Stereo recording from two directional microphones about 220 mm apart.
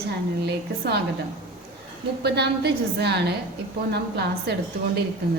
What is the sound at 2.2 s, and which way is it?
A woman's voice, 50° right (ahead or behind).